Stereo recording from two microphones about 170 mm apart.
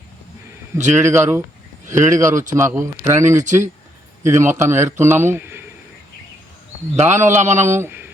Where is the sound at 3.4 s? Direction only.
45° right (ahead or behind).